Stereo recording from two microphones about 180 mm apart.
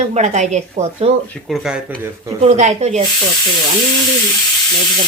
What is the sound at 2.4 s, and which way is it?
Speech, 40° right (ahead or behind).